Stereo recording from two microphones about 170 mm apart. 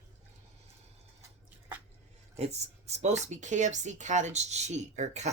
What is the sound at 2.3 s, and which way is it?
Speech, 40° right (ahead or behind).